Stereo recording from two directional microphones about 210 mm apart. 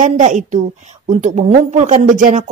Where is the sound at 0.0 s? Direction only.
35° right (ahead or behind).